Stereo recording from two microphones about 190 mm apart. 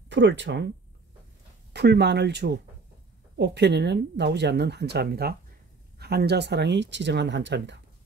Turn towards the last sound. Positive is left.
turn(degrees=-70)  # may be behind; listen again after turning